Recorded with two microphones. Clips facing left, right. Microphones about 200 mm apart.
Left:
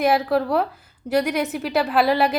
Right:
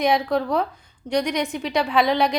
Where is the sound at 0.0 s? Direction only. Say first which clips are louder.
Left 1 dB; 5° left (ahead or behind).